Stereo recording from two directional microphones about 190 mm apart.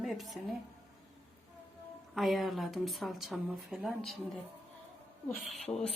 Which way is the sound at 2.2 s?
Centre (ahead or behind).